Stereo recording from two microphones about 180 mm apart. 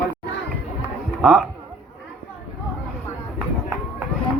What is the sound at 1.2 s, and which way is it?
Speech, centre (ahead or behind).